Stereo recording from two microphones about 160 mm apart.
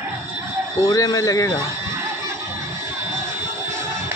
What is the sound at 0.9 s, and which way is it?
Speech, 25° left (ahead or behind).